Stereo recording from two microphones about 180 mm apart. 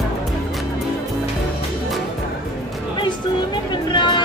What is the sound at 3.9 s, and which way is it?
Music, 25° left (ahead or behind).